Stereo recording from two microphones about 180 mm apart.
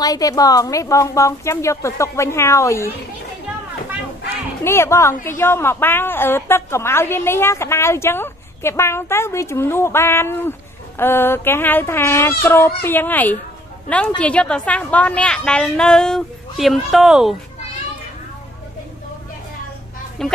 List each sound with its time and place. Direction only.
0.0 s a woman's voice: 20° left (ahead or behind)
4.6 s a woman's voice: 15° left (ahead or behind); by 17.4 s 5° right (ahead or behind)
20.2 s a woman's voice: 5° left (ahead or behind)